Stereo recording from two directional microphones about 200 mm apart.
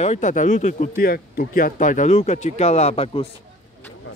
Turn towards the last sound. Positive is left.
turn(degrees=30)  # may be behind; listen again after turning